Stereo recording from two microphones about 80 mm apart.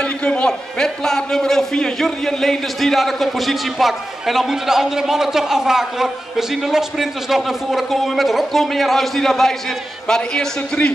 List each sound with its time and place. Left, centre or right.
0.0 s a man's voice: centre